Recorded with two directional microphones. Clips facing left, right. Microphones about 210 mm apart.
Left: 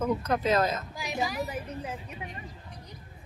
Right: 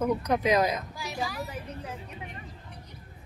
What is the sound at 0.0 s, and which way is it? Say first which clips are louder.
Speech: right 1 dB; 15° right (ahead or behind).